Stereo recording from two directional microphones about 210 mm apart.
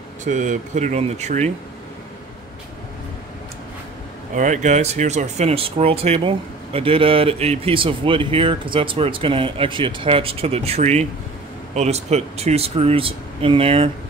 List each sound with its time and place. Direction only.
0.2 s speech: 35° right (ahead or behind)
4.4 s speech: 35° right (ahead or behind)